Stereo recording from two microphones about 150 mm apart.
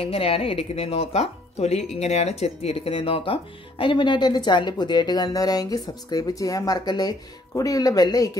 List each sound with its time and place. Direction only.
0.0 s speech: 40° left (ahead or behind); by 8.3 s 25° left (ahead or behind)